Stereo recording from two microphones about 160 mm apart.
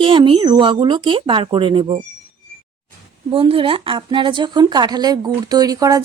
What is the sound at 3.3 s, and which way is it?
A woman's voice, 35° right (ahead or behind).